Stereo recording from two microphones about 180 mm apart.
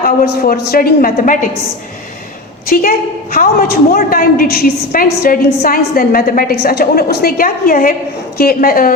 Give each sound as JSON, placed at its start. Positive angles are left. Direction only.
{"t": 0.0, "sound": "a man's voice", "side_deg": 55}
{"t": 3.3, "sound": "a woman's voice", "side_deg": 55}